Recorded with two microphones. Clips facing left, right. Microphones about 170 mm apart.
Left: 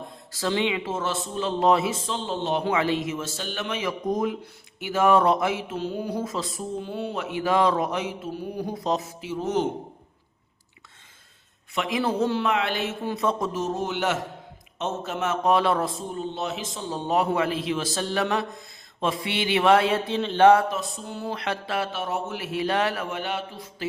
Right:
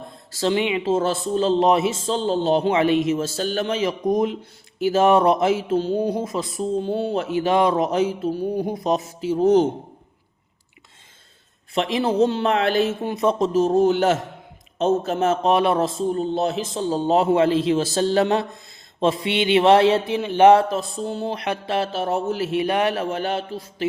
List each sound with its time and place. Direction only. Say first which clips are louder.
0.3 s a man's voice: right 4 dB; 20° right (ahead or behind)
0.9 s a man's voice: right 8 dB; 30° right (ahead or behind)
2.1 s a man's voice: right 9 dB; 35° right (ahead or behind)
4.0 s speech: right 5 dB; 15° right (ahead or behind)
4.8 s a man's voice: right 4 dB; 30° right (ahead or behind)
6.7 s a man's voice: right 7 dB; 30° right (ahead or behind)
9.2 s a man's voice: right 11 dB; 30° right (ahead or behind)
11.7 s a man's voice: right 4 dB; 30° right (ahead or behind)
13.1 s a man's voice: right 5 dB; 20° right (ahead or behind); by 15.4 s 35° right (ahead or behind)
15.4 s a man's voice: right 1 dB; 20° right (ahead or behind)
16.1 s a man's voice: right 8 dB; 35° right (ahead or behind)
20.1 s a man's voice: even; 15° right (ahead or behind)
21.8 s a man's voice: right 5 dB; 35° right (ahead or behind)
22.5 s a man's voice: right 2 dB; 15° right (ahead or behind); by 23.4 s 40° right (ahead or behind)